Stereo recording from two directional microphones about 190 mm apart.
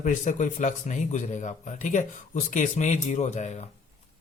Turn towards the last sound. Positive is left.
turn(degrees=35)  # may be behind; listen again after turning